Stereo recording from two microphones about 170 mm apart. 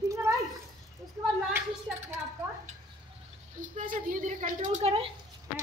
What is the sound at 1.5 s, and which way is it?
Speech, 15° right (ahead or behind).